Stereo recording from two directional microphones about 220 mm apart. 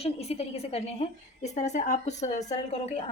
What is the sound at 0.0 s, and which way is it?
A woman's voice, 30° left (ahead or behind).